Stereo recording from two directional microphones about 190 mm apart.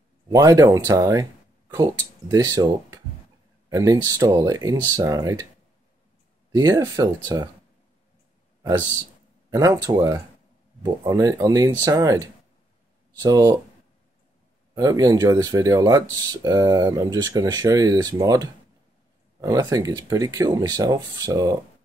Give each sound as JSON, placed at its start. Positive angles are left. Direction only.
{"t": 0.3, "sound": "speech", "side_deg": -20}
{"t": 6.5, "sound": "speech", "side_deg": -15}
{"t": 9.5, "sound": "speech", "side_deg": -20}
{"t": 14.8, "sound": "speech", "side_deg": -20}